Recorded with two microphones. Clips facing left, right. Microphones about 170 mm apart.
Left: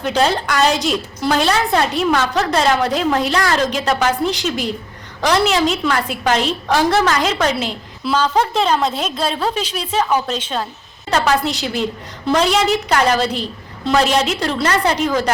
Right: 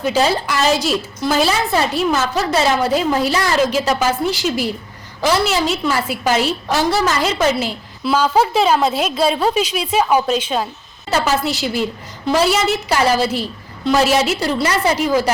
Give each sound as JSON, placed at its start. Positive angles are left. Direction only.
{"t": 0.0, "sound": "a woman's voice", "side_deg": -5}